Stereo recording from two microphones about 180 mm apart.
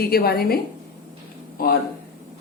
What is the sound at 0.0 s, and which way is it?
A woman's voice, 60° left (ahead or behind).